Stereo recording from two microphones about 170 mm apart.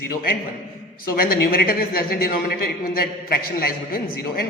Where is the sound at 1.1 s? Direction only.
60° left (ahead or behind).